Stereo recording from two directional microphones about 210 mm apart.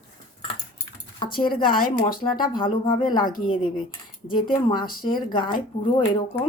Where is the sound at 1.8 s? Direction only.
45° left (ahead or behind).